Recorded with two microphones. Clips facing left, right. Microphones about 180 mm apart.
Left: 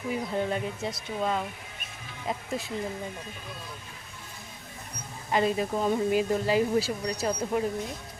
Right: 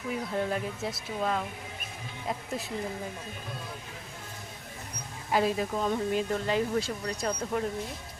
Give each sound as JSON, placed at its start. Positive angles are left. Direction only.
{"t": 0.1, "sound": "speech", "side_deg": 0}
{"t": 5.3, "sound": "speech", "side_deg": 0}
{"t": 5.7, "sound": "speech", "side_deg": 10}